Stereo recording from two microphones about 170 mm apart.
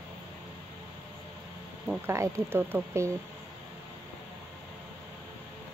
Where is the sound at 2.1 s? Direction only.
15° right (ahead or behind).